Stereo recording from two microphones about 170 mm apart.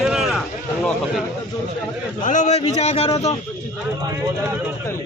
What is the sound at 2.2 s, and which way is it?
A man's voice, 45° left (ahead or behind).